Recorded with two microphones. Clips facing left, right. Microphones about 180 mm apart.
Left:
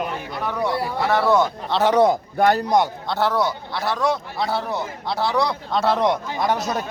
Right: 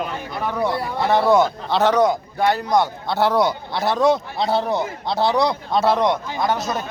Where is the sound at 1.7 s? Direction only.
Centre (ahead or behind).